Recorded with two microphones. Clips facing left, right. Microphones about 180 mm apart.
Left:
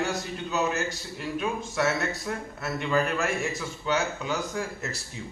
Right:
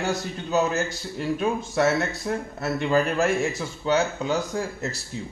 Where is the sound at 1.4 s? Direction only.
35° right (ahead or behind).